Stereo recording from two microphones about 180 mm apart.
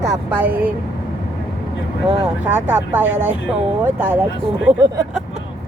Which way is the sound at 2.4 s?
10° right (ahead or behind).